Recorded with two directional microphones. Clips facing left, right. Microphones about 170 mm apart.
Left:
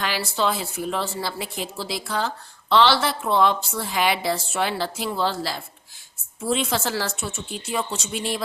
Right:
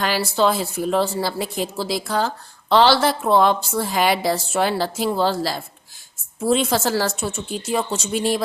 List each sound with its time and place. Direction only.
0.0 s a woman's voice: 40° right (ahead or behind)